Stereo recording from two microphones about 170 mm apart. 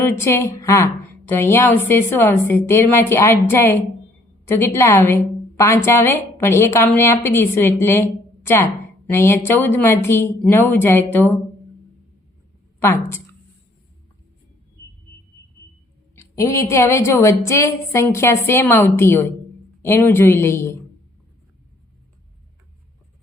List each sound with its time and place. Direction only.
0.0 s a woman's voice: 15° left (ahead or behind)
12.8 s a woman's voice: 15° left (ahead or behind)
16.1 s a woman's voice: 15° left (ahead or behind)